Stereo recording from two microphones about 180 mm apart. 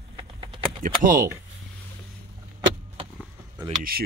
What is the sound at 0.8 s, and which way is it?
Speech, 50° right (ahead or behind).